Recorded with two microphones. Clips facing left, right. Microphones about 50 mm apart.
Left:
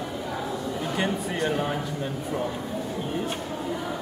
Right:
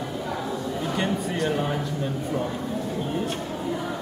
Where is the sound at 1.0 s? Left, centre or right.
Centre.